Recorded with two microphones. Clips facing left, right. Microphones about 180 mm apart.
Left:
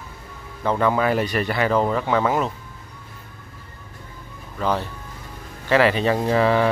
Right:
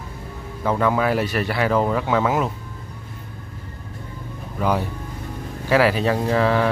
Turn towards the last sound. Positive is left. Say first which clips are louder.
# left 1 dB
turn(degrees=0)  # may be behind; listen again after turning